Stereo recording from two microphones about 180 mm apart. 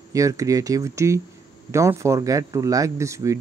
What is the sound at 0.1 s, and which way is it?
Speech, 15° right (ahead or behind).